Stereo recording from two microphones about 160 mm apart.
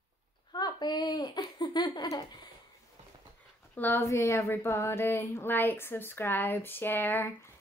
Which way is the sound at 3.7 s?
10° left (ahead or behind).